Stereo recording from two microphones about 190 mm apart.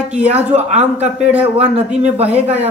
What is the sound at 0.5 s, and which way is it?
Speech, 35° right (ahead or behind).